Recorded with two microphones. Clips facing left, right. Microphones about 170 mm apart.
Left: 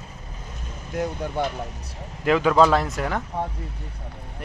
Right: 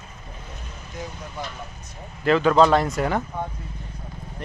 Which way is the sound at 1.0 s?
65° left (ahead or behind).